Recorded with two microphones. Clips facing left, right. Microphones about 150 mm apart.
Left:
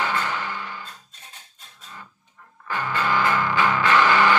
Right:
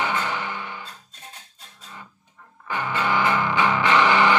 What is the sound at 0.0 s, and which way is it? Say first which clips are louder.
Music: even; 15° right (ahead or behind).